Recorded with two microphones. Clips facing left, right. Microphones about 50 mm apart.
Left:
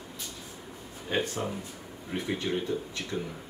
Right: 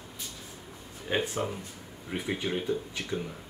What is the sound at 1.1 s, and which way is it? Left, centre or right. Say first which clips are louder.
Speech: right 1 dB; centre.